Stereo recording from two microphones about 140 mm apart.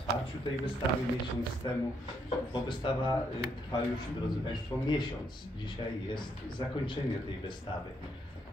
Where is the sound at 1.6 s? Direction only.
35° left (ahead or behind).